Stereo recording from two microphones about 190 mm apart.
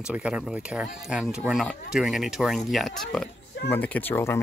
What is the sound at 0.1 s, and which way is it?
Speech, 5° right (ahead or behind).